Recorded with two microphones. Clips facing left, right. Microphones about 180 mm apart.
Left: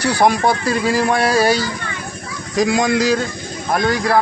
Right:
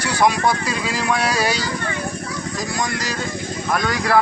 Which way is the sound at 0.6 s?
55° left (ahead or behind).